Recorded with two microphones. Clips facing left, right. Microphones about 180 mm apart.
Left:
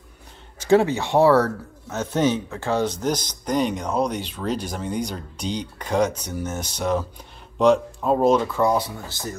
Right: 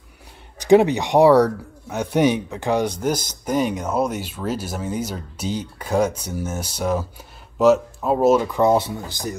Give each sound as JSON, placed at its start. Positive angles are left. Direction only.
{"t": 0.6, "sound": "speech", "side_deg": -15}
{"t": 8.5, "sound": "speech", "side_deg": -20}